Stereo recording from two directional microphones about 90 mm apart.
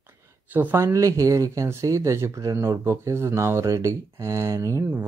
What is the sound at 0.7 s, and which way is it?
Speech, 35° right (ahead or behind).